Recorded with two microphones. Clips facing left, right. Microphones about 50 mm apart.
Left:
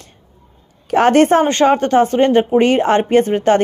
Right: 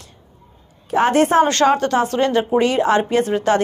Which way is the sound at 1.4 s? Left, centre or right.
Left.